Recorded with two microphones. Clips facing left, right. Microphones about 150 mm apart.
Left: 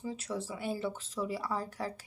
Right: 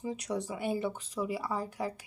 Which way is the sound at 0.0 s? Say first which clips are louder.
Right 3 dB; 15° right (ahead or behind).